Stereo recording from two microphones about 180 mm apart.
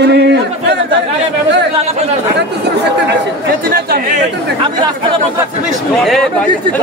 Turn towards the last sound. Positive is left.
turn(degrees=0)  # may be behind; listen again after turning